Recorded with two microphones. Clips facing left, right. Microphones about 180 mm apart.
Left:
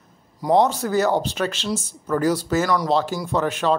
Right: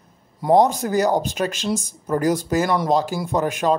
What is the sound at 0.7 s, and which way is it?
Speech, 15° right (ahead or behind).